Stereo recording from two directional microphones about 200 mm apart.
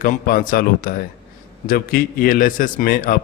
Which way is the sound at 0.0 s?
40° left (ahead or behind).